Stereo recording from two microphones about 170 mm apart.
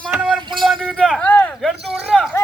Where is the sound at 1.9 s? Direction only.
5° right (ahead or behind).